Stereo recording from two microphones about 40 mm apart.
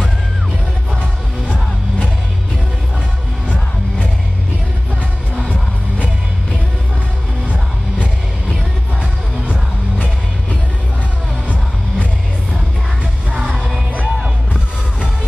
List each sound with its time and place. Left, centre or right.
7.4 s music: right
9.5 s music: right
13.9 s music: right